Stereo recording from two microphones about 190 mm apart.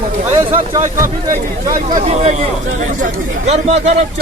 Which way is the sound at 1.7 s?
40° right (ahead or behind).